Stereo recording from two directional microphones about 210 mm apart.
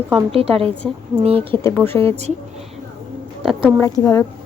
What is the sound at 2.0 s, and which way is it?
Speech, 30° right (ahead or behind).